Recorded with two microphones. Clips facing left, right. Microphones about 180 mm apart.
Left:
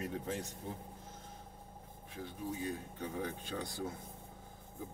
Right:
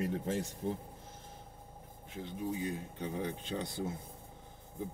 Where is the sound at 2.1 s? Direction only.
20° right (ahead or behind).